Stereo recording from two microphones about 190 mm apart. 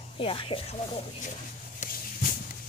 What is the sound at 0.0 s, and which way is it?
Speech, 30° left (ahead or behind).